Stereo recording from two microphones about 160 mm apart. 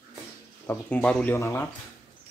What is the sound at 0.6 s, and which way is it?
Speech, 10° left (ahead or behind).